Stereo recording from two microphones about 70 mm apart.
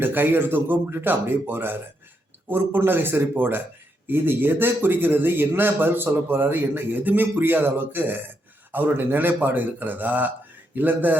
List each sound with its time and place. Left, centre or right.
0.0 s a man's voice: right